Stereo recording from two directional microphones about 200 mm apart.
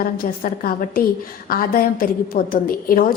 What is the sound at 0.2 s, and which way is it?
A woman's voice, 45° left (ahead or behind).